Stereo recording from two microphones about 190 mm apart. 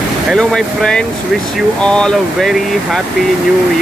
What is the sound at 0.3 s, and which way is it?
Speech, centre (ahead or behind).